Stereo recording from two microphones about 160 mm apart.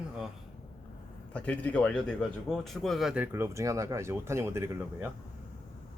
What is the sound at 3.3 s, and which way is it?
Speech, 15° right (ahead or behind).